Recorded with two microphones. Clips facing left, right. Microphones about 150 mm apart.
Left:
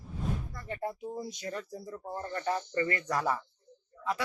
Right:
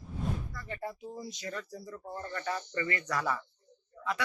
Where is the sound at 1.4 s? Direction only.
15° left (ahead or behind).